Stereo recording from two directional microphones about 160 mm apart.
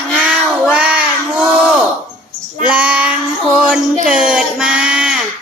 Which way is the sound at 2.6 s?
10° right (ahead or behind).